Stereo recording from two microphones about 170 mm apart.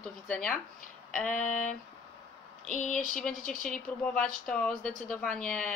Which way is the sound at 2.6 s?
45° left (ahead or behind).